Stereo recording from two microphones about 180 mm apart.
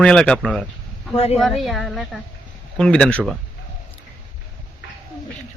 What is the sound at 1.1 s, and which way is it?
Speech, 35° left (ahead or behind).